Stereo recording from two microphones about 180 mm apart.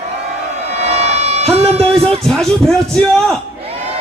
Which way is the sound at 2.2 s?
Centre (ahead or behind).